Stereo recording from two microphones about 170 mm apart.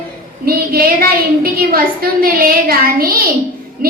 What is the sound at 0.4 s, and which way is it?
A woman's voice, 60° right (ahead or behind).